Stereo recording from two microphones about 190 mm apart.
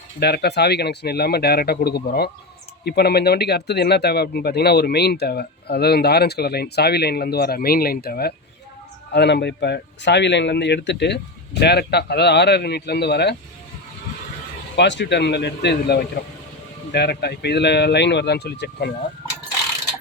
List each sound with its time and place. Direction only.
0.2 s speech: 60° left (ahead or behind)
14.8 s speech: 65° left (ahead or behind)